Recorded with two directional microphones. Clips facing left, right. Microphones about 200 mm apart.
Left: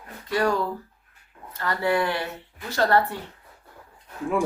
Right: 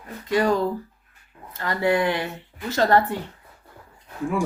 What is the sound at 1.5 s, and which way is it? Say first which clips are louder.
Speech: right 2 dB; 20° right (ahead or behind).